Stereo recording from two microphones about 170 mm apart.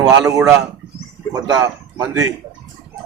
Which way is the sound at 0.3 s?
20° right (ahead or behind).